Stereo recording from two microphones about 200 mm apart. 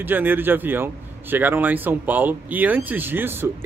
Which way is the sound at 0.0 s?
10° right (ahead or behind).